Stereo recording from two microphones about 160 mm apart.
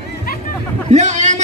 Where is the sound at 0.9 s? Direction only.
45° right (ahead or behind).